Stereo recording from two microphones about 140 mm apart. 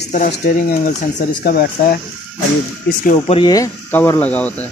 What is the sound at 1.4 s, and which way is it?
Speech, 90° left.